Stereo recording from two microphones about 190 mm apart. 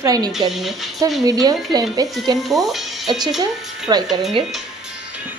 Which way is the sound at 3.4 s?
20° right (ahead or behind).